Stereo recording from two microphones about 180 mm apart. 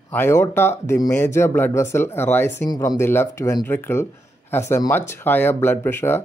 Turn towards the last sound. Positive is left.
turn(degrees=15)  # may be behind; listen again after turning